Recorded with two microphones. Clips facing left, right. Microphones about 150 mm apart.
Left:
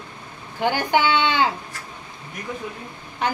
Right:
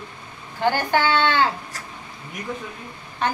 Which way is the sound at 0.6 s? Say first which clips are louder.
Even; 15° left (ahead or behind).